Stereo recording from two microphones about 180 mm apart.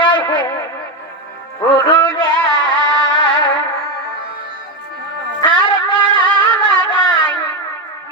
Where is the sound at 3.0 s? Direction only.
25° left (ahead or behind).